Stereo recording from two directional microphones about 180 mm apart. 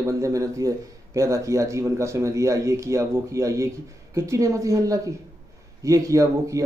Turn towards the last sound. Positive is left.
turn(degrees=-15)  # may be behind; listen again after turning